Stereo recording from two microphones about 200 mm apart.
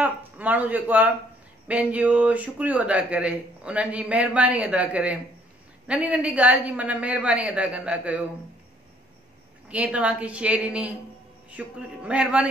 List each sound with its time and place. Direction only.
0.0 s speech: 10° right (ahead or behind)
9.7 s speech: 5° right (ahead or behind)